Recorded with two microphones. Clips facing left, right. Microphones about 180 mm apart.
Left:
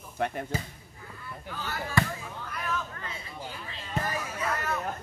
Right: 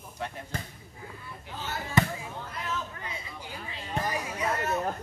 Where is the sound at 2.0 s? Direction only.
20° right (ahead or behind).